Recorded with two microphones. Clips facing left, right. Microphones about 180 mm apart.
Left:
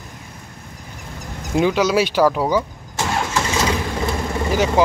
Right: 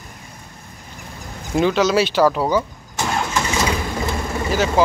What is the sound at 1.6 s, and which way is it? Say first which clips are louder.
Speech: even; 10° left (ahead or behind).